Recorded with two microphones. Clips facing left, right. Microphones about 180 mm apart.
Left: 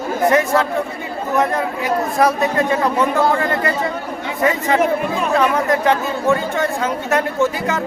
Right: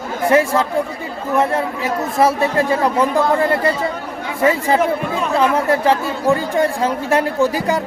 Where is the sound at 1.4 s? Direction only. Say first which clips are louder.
Right 1 dB; 30° right (ahead or behind).